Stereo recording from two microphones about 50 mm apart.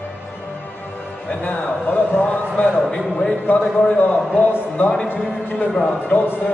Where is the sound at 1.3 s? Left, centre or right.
Left.